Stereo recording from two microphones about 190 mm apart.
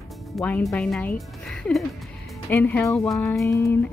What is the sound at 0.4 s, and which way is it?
Speech, 5° left (ahead or behind).